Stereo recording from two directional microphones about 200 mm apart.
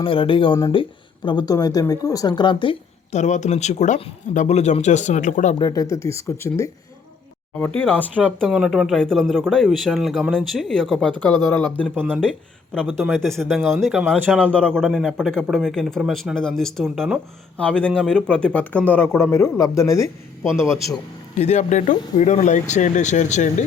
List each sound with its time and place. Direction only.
0.0 s speech: 25° left (ahead or behind)
5.5 s speech: 20° left (ahead or behind)
7.8 s speech: 10° left (ahead or behind)
20.4 s speech: 5° right (ahead or behind)
21.3 s speech: 35° left (ahead or behind)